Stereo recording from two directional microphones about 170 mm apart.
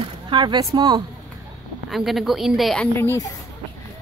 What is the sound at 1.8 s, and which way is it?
A woman's voice, centre (ahead or behind).